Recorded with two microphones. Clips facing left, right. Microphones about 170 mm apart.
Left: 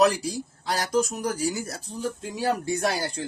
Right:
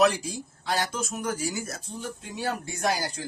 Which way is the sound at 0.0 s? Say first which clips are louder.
Left 2 dB; 35° left (ahead or behind).